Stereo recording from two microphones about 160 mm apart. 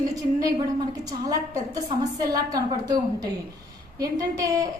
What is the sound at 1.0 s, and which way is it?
A woman's voice, 20° right (ahead or behind).